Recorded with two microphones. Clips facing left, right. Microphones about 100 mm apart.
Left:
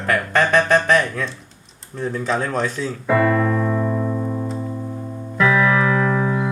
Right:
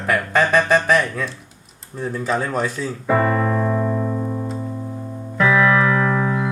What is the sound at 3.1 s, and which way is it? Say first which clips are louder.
Keyboard: left 1 dB; 25° right (ahead or behind).